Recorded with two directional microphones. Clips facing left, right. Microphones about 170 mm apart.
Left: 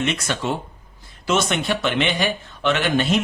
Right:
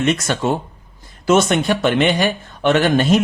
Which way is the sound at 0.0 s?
45° right (ahead or behind).